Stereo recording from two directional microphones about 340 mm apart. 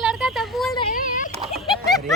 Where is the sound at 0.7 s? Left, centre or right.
Centre.